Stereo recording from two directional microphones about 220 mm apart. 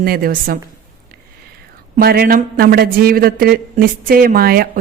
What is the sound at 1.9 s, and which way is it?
A man's voice, 40° right (ahead or behind).